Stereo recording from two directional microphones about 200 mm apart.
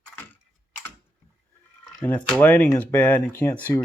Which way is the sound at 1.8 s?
5° left (ahead or behind).